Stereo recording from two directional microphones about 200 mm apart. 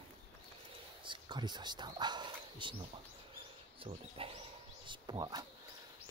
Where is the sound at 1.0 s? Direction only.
25° right (ahead or behind).